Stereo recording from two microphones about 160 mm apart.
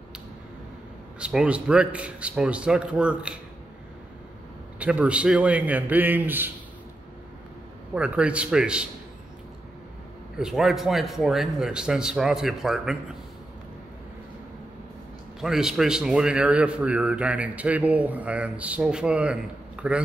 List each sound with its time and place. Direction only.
1.2 s a man's voice: 5° right (ahead or behind)
4.7 s a man's voice: 10° right (ahead or behind)
7.9 s a man's voice: 5° right (ahead or behind)
10.4 s a man's voice: centre (ahead or behind)
15.4 s a man's voice: centre (ahead or behind)